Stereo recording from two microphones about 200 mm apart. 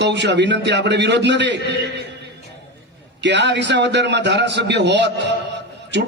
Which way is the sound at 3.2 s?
60° right (ahead or behind).